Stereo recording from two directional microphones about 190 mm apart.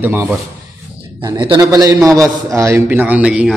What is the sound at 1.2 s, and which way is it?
A man's voice, 25° right (ahead or behind).